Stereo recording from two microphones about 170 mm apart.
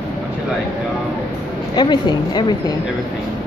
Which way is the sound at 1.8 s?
25° left (ahead or behind).